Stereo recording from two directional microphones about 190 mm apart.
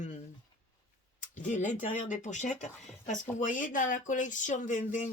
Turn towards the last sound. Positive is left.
turn(degrees=40)  # may be behind; listen again after turning